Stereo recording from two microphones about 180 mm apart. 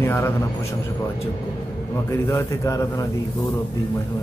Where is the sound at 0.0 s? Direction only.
15° left (ahead or behind).